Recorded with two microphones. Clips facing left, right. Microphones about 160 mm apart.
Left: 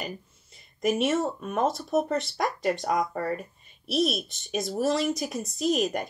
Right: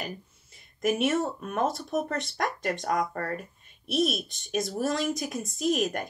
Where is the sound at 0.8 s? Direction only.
Centre (ahead or behind).